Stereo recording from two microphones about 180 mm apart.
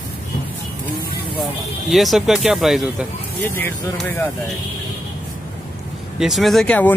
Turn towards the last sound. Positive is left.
turn(degrees=5)  # may be behind; listen again after turning